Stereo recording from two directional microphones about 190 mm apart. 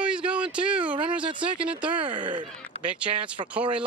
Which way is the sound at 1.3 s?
25° right (ahead or behind).